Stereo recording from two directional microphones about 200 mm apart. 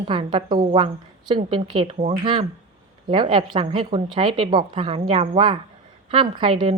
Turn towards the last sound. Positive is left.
turn(degrees=-25)  # may be behind; listen again after turning